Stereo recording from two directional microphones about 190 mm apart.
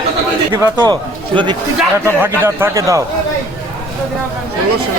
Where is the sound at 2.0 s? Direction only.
10° right (ahead or behind).